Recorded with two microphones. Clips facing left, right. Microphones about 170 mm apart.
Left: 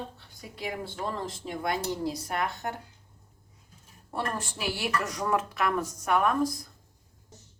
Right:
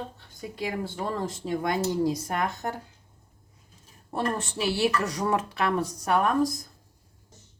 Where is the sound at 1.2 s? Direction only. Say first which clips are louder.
Right 4 dB; 45° right (ahead or behind).